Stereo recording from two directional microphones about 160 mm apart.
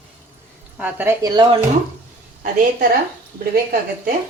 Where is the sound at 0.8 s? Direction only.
10° right (ahead or behind).